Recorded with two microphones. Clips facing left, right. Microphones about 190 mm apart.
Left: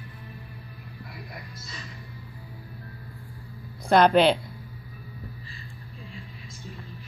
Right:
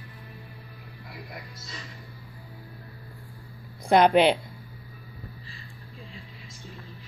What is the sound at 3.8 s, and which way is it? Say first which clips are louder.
Speech: even; 15° right (ahead or behind).